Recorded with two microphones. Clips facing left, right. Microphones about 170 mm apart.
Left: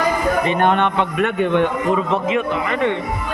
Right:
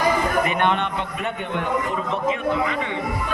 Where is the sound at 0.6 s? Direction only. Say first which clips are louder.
Left 5 dB; 55° left (ahead or behind).